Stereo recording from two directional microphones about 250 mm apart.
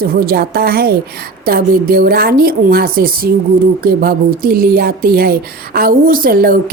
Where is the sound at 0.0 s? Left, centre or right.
Right.